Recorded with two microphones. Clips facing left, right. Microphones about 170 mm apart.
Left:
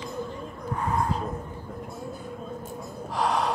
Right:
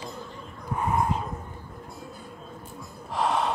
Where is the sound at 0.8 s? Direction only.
20° right (ahead or behind).